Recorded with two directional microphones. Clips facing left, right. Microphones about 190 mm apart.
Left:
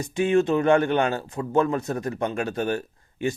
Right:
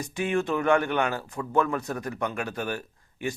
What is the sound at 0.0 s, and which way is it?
Speech, 25° left (ahead or behind).